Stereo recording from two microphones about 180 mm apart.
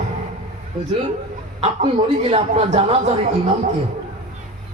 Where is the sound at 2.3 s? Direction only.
35° right (ahead or behind).